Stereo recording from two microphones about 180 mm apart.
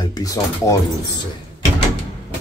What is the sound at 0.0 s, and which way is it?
Speech, 20° left (ahead or behind).